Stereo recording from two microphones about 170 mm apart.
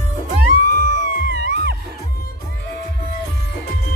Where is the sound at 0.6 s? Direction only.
70° right (ahead or behind).